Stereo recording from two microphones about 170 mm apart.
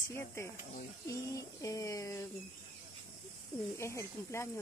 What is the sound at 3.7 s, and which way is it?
Speech, 15° left (ahead or behind).